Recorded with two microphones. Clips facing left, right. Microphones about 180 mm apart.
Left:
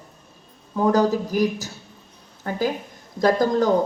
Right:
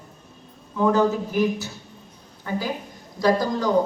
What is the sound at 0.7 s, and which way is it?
A woman's voice, 35° left (ahead or behind).